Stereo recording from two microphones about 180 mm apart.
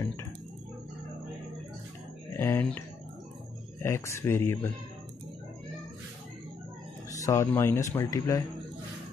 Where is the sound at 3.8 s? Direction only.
15° left (ahead or behind).